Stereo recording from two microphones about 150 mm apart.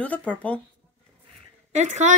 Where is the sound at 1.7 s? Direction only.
50° right (ahead or behind).